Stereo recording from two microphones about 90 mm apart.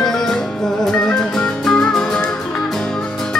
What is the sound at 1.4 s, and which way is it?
Music, 5° left (ahead or behind).